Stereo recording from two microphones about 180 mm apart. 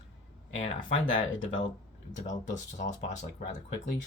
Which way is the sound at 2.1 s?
45° left (ahead or behind).